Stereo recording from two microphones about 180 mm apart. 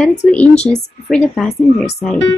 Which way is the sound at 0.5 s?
35° left (ahead or behind).